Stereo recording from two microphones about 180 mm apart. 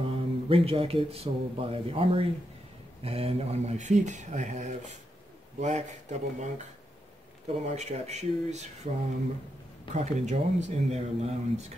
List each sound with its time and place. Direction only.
0.0 s speech: 30° right (ahead or behind)
9.9 s speech: 40° right (ahead or behind)